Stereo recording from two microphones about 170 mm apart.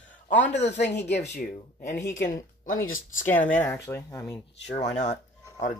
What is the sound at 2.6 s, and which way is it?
Speech, 50° left (ahead or behind).